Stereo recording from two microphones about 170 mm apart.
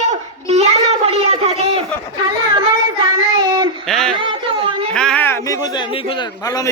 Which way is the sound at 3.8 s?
Centre (ahead or behind).